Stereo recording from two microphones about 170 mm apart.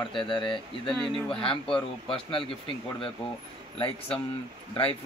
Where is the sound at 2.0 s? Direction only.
35° left (ahead or behind).